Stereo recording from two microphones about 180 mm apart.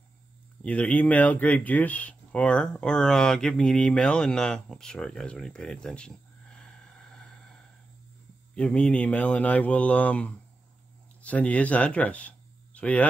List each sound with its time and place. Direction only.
0.7 s speech: 5° left (ahead or behind)
8.5 s speech: 5° left (ahead or behind)